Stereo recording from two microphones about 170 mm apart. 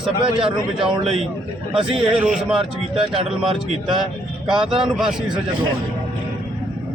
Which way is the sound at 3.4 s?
30° right (ahead or behind).